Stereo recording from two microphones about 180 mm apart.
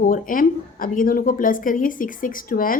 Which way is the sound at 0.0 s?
50° left (ahead or behind).